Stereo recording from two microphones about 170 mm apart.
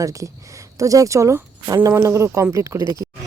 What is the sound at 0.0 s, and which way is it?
A woman's voice, 20° right (ahead or behind).